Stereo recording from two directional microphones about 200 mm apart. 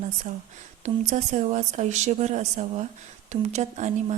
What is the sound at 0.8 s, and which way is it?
Speech, 35° right (ahead or behind).